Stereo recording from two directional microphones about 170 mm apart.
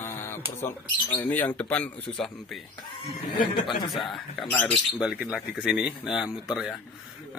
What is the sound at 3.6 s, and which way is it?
Speech, 30° left (ahead or behind).